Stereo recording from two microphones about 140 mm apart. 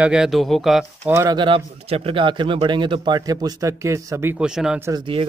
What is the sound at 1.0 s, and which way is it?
Speech, 15° right (ahead or behind).